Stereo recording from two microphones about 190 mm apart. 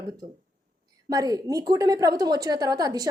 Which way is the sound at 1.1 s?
20° right (ahead or behind).